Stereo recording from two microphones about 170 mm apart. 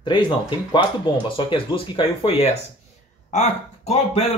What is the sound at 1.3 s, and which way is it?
Speech, 30° left (ahead or behind).